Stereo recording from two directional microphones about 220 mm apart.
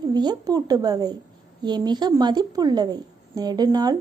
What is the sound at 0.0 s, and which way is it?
A woman's voice, 20° right (ahead or behind).